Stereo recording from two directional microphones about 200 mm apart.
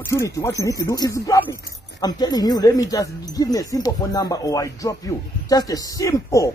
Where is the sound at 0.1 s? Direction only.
15° left (ahead or behind).